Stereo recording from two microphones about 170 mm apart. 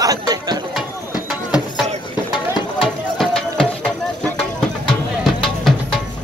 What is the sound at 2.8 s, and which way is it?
Music, centre (ahead or behind).